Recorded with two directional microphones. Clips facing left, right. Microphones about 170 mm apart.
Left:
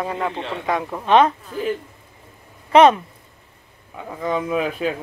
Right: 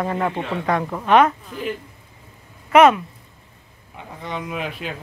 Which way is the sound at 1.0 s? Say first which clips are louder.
Even; 25° left (ahead or behind).